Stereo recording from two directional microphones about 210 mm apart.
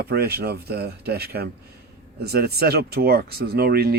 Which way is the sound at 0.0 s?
50° right (ahead or behind).